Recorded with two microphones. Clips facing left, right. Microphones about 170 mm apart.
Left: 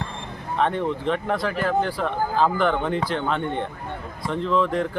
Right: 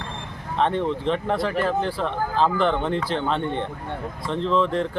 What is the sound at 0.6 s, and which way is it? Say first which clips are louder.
Speech: right 1 dB; 5° left (ahead or behind).